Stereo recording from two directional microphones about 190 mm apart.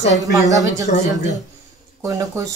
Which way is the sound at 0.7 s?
20° right (ahead or behind).